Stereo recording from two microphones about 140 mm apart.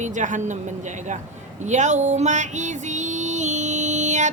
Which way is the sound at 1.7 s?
55° right (ahead or behind).